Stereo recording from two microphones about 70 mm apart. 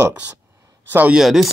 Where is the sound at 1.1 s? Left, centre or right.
Centre.